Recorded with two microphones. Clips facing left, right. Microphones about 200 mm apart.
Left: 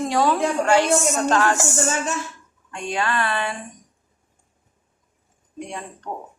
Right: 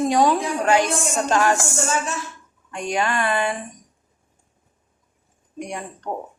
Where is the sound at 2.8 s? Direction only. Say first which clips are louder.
Right 2 dB; 15° right (ahead or behind).